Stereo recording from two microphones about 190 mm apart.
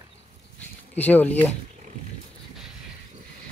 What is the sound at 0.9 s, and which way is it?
Speech, 10° left (ahead or behind).